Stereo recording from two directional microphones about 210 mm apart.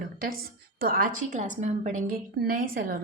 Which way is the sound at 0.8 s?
45° right (ahead or behind).